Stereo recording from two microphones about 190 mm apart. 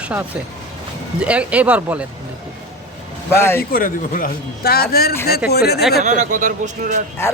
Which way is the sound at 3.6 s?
50° left (ahead or behind).